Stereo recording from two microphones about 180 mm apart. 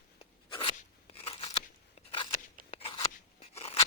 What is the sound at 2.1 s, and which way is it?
Crunch, 30° left (ahead or behind).